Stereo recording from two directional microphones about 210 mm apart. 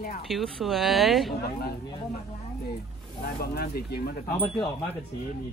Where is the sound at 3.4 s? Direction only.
50° left (ahead or behind).